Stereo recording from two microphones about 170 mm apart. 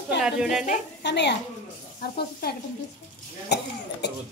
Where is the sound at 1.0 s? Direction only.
90° left.